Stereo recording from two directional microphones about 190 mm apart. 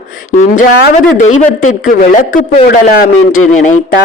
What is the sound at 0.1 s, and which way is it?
A woman's voice, 45° left (ahead or behind).